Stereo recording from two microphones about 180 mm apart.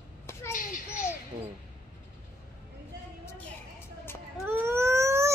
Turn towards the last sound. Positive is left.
turn(degrees=-15)  # may be behind; listen again after turning